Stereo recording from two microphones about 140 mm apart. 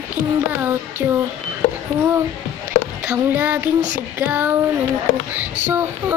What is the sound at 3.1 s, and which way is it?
Child singing, 10° right (ahead or behind).